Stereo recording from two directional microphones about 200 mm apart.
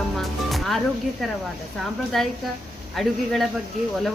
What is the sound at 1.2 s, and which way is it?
Speech, centre (ahead or behind).